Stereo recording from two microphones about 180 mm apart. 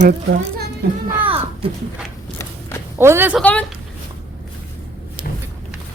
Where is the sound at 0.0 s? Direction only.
65° right (ahead or behind).